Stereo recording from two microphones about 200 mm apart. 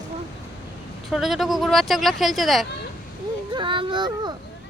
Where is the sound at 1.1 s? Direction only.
Centre (ahead or behind).